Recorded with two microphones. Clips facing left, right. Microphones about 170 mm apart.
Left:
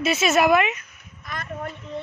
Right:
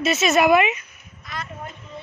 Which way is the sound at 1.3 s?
50° left (ahead or behind).